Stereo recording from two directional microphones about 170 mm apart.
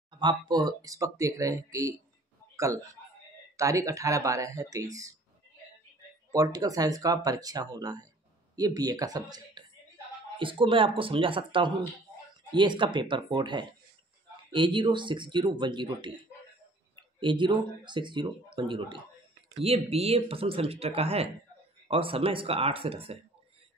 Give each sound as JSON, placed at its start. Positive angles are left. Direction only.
{"t": 0.1, "sound": "a man's voice", "side_deg": -25}
{"t": 6.3, "sound": "speech", "side_deg": -20}